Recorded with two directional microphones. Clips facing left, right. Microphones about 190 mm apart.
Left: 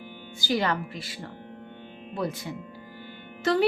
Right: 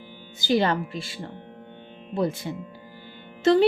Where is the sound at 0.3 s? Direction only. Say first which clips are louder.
Right 4 dB; 25° right (ahead or behind).